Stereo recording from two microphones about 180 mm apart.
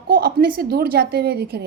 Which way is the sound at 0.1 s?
60° right (ahead or behind).